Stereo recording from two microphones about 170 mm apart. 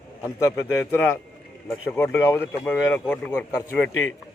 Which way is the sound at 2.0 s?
15° left (ahead or behind).